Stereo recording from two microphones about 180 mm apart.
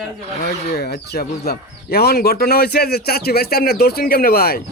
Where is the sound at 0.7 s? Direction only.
65° left (ahead or behind).